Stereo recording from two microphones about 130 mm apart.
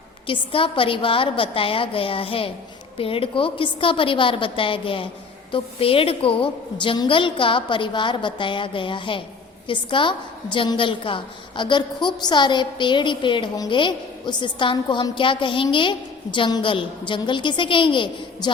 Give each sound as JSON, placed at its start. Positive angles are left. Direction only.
{"t": 0.3, "sound": "a woman's voice", "side_deg": 45}